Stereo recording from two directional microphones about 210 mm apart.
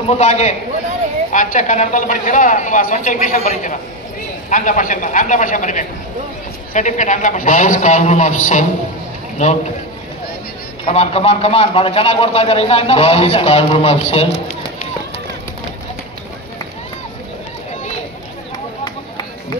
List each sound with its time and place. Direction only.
0.1 s speech: 35° left (ahead or behind)
10.9 s a man's voice: 30° left (ahead or behind)